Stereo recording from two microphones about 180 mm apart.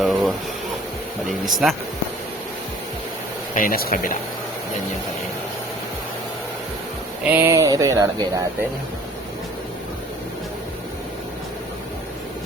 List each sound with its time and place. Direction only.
0.0 s a sound: centre (ahead or behind)
1.3 s speech: centre (ahead or behind)
3.5 s speech: 50° left (ahead or behind)
7.3 s speech: 10° right (ahead or behind)